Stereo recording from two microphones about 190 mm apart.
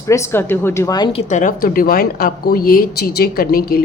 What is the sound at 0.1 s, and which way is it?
A woman's voice, 10° left (ahead or behind).